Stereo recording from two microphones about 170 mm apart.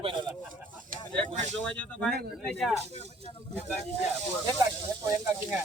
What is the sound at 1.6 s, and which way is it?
Speech, 5° left (ahead or behind).